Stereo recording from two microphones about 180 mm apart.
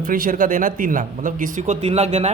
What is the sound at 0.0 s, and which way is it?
Speech, 50° right (ahead or behind).